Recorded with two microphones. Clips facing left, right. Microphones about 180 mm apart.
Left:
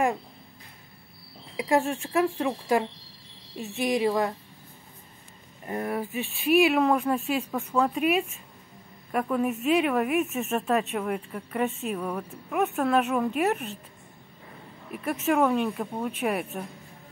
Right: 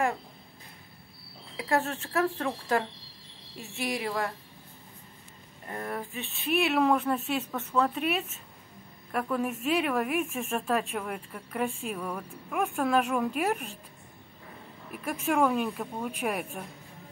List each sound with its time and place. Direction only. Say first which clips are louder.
1.6 s a woman's voice: left 4 dB; 15° left (ahead or behind)
5.7 s speech: left 6 dB; 10° left (ahead or behind)
14.9 s speech: left 4 dB; 5° left (ahead or behind)